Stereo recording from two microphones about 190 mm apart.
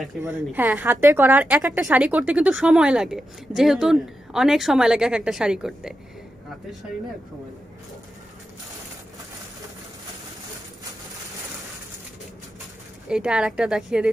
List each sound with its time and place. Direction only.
0.2 s a woman's voice: 15° right (ahead or behind)
13.1 s a woman's voice: 5° right (ahead or behind)